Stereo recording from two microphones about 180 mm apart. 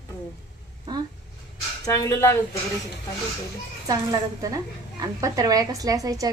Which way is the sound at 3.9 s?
20° right (ahead or behind).